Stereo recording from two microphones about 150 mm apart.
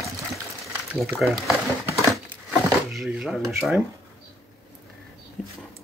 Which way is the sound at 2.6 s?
5° right (ahead or behind).